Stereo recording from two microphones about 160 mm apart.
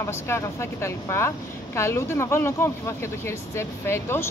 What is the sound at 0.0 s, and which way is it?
Speech, 15° left (ahead or behind).